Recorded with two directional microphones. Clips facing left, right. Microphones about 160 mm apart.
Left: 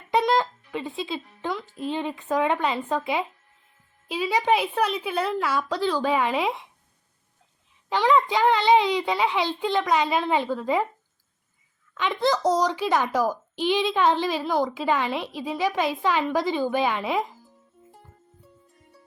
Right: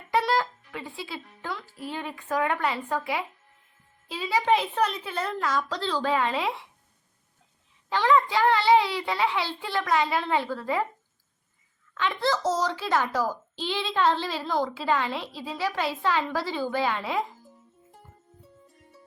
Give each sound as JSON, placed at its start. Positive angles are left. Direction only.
{"t": 0.1, "sound": "a child's voice", "side_deg": 20}
{"t": 7.9, "sound": "a child's voice", "side_deg": 20}
{"t": 11.9, "sound": "a child's voice", "side_deg": 15}